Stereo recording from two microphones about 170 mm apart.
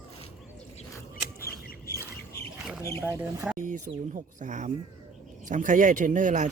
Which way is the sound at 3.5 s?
50° right (ahead or behind).